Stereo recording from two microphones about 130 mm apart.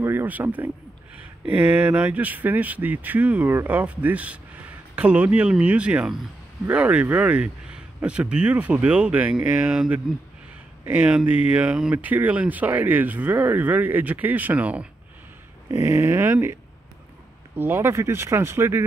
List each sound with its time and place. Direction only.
0.0 s speech: 15° right (ahead or behind)
11.0 s speech: 10° right (ahead or behind)
15.7 s speech: 20° right (ahead or behind)
17.6 s speech: 20° right (ahead or behind)